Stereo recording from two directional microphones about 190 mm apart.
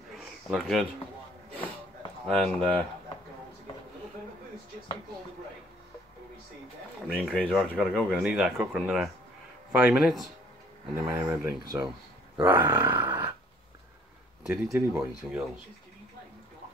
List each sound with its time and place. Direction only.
0.1 s a sound: centre (ahead or behind)
2.2 s speech: centre (ahead or behind)
7.1 s speech: 5° left (ahead or behind)
11.1 s speech: 15° right (ahead or behind)
12.4 s grunt: 15° right (ahead or behind)
14.4 s speech: 5° right (ahead or behind)